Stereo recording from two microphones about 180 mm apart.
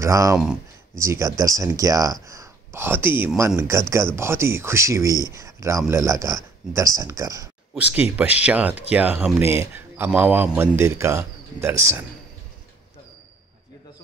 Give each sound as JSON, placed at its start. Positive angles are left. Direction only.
{"t": 0.0, "sound": "speech", "side_deg": -15}